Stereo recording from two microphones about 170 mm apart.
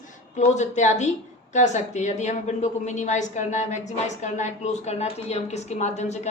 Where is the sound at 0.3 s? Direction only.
45° left (ahead or behind).